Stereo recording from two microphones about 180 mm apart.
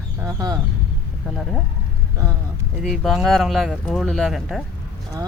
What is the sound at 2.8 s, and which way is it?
Speech, centre (ahead or behind).